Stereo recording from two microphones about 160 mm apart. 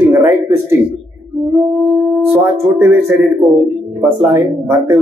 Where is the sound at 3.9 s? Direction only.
10° right (ahead or behind).